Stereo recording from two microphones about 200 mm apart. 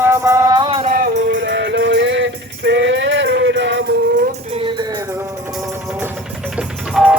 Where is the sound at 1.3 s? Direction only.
65° right (ahead or behind).